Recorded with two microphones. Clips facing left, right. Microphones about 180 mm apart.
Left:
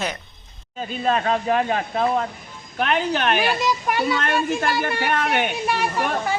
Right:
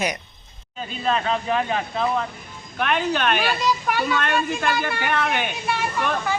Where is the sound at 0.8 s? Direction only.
45° left (ahead or behind).